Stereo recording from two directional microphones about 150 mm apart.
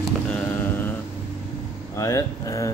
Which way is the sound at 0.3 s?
10° left (ahead or behind).